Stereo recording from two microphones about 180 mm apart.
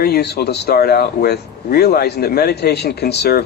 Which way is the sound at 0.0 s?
60° left (ahead or behind).